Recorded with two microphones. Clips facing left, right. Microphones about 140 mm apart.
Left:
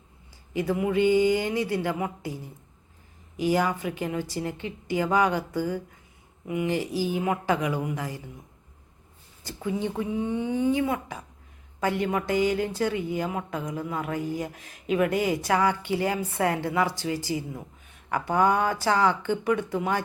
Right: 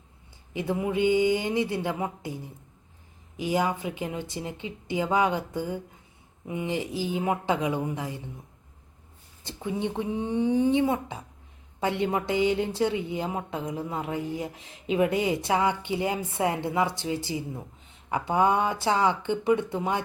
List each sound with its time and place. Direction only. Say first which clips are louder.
0.5 s speech: left 3 dB; 20° right (ahead or behind)
9.4 s speech: left 1 dB; 20° right (ahead or behind)